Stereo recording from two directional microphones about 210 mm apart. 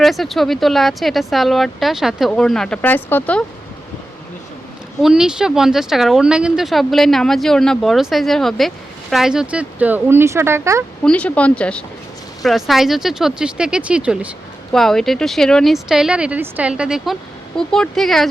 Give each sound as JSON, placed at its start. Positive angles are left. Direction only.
{"t": 0.0, "sound": "speech", "side_deg": 0}
{"t": 5.0, "sound": "speech", "side_deg": -5}
{"t": 11.0, "sound": "speech", "side_deg": 5}